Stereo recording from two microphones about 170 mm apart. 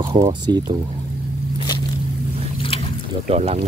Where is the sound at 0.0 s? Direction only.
20° right (ahead or behind).